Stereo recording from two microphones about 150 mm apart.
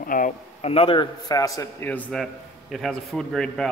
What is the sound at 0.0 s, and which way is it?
Speech, 65° left (ahead or behind).